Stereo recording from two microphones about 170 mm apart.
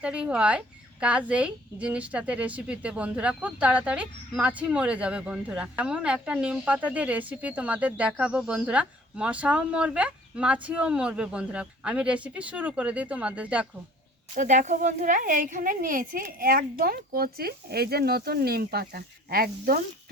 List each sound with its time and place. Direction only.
0.0 s a woman's voice: 5° right (ahead or behind)
14.3 s speech: 45° right (ahead or behind); by 19.8 s 60° right (ahead or behind)